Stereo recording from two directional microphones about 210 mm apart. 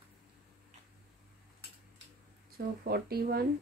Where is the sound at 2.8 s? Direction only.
50° right (ahead or behind).